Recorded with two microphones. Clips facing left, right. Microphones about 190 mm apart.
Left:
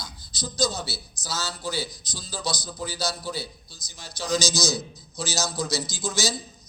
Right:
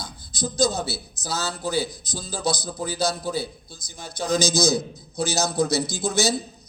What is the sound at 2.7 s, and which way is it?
A man's voice, 50° right (ahead or behind).